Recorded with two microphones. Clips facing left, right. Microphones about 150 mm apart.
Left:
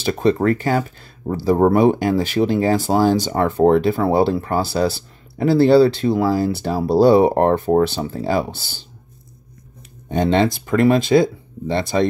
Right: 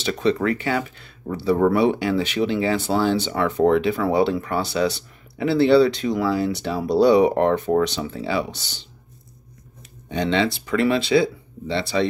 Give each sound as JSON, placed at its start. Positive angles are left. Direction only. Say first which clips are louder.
{"t": 0.0, "sound": "speech", "louder": "left 4 dB", "side_deg": 40}
{"t": 10.0, "sound": "speech", "louder": "left 4 dB", "side_deg": 50}